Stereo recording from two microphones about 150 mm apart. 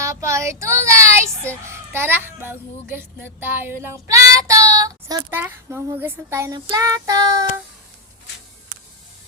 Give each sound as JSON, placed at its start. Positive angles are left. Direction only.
{"t": 0.0, "sound": "child singing", "side_deg": -20}
{"t": 1.6, "sound": "a child's voice", "side_deg": -15}
{"t": 2.9, "sound": "child singing", "side_deg": -15}
{"t": 5.4, "sound": "speech", "side_deg": -15}
{"t": 6.7, "sound": "child singing", "side_deg": -25}